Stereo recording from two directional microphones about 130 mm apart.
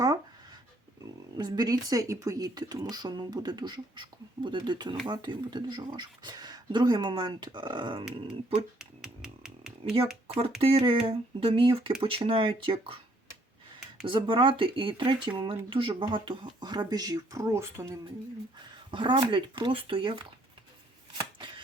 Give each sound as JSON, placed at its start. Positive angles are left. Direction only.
{"t": 1.4, "sound": "speech", "side_deg": -30}
{"t": 8.8, "sound": "a sound", "side_deg": -5}
{"t": 10.6, "sound": "speech", "side_deg": -45}
{"t": 14.1, "sound": "speech", "side_deg": -40}
{"t": 18.9, "sound": "speech", "side_deg": -40}
{"t": 21.2, "sound": "chopping", "side_deg": -35}